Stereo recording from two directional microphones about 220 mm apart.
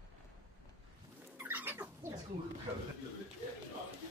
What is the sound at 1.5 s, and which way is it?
Bird, 10° right (ahead or behind).